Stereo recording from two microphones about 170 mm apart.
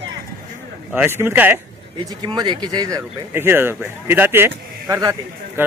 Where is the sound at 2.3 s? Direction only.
25° right (ahead or behind).